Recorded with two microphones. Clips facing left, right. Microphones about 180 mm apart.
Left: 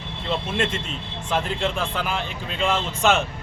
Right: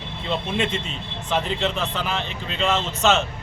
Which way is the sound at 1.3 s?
10° left (ahead or behind).